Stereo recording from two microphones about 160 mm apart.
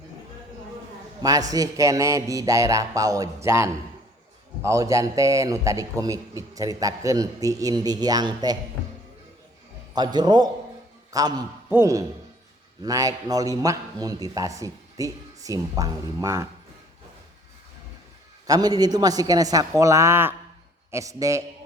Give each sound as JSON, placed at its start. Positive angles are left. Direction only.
{"t": 1.2, "sound": "a man's voice", "side_deg": -20}
{"t": 9.9, "sound": "a man's voice", "side_deg": -25}
{"t": 18.4, "sound": "a man's voice", "side_deg": -25}